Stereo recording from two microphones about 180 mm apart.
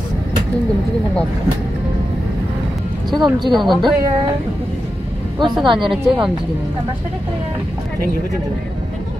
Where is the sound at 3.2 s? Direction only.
25° right (ahead or behind).